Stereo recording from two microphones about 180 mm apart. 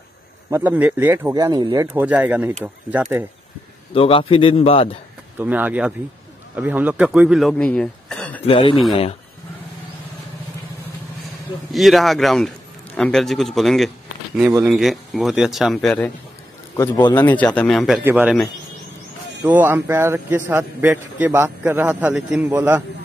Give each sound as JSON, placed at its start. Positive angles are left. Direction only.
{"t": 0.5, "sound": "a man's voice", "side_deg": -10}
{"t": 2.0, "sound": "a man's voice", "side_deg": -10}
{"t": 3.9, "sound": "a man's voice", "side_deg": 30}
{"t": 5.4, "sound": "a man's voice", "side_deg": -10}
{"t": 8.5, "sound": "speech", "side_deg": 30}
{"t": 11.7, "sound": "a man's voice", "side_deg": 0}
{"t": 16.7, "sound": "a man's voice", "side_deg": 15}
{"t": 19.5, "sound": "a man's voice", "side_deg": -10}